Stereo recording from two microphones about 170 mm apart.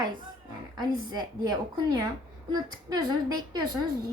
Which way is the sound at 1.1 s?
25° right (ahead or behind).